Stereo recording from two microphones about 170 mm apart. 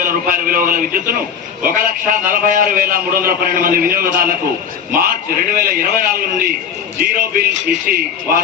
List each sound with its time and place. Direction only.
0.0 s a man's voice: 55° right (ahead or behind)